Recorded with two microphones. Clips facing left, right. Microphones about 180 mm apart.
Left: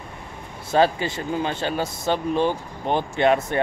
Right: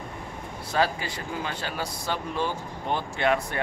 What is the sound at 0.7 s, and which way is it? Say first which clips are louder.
A man's voice: left 7 dB; 25° left (ahead or behind).